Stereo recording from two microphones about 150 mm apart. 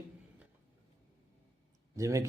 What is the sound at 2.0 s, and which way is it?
Speech, 20° right (ahead or behind).